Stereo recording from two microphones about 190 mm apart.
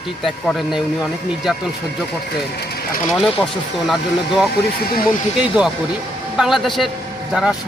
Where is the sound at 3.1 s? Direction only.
Centre (ahead or behind).